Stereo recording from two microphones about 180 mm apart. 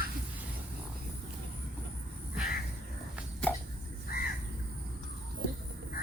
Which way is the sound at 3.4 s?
5° left (ahead or behind).